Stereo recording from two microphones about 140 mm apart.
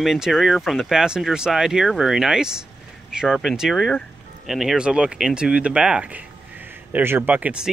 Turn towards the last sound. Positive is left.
turn(degrees=-10)  # may be behind; listen again after turning